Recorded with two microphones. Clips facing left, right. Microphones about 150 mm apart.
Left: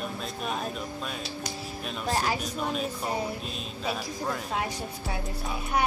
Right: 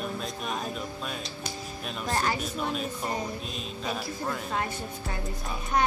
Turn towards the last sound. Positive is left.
turn(degrees=5)  # may be behind; listen again after turning